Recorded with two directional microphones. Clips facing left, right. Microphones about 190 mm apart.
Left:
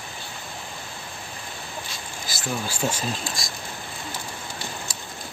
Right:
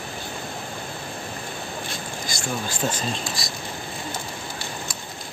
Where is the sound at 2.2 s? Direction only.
5° left (ahead or behind).